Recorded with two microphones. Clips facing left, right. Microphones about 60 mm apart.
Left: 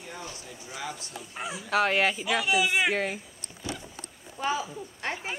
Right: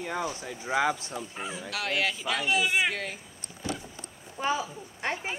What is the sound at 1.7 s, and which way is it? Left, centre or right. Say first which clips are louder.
Speech: left 6 dB; left.